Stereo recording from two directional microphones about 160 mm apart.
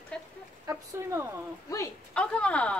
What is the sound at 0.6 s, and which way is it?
Speech, 15° right (ahead or behind).